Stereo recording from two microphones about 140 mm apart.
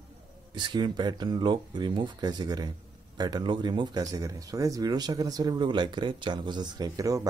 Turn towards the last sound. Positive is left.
turn(degrees=-25)  # may be behind; listen again after turning